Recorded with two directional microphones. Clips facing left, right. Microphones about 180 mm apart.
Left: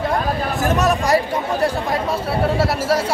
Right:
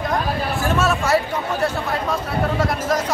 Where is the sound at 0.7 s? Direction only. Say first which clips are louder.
Left 2 dB; 15° left (ahead or behind).